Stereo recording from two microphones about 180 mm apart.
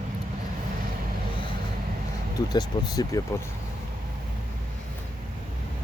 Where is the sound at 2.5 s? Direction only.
20° left (ahead or behind).